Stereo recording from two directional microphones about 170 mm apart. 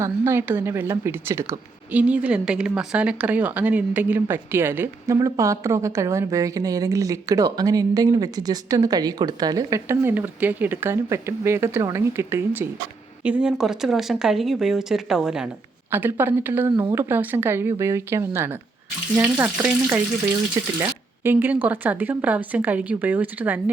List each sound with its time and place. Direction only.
0.0 s a woman's voice: 15° right (ahead or behind)